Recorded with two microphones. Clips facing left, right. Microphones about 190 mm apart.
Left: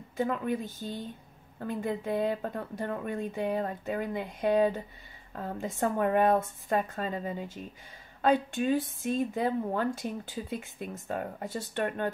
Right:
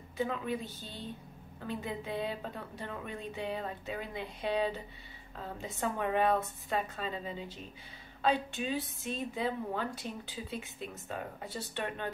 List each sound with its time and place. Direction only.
0.2 s a woman's voice: 50° left (ahead or behind)